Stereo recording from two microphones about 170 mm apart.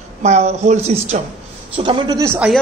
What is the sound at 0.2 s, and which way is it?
A woman's voice, 40° right (ahead or behind).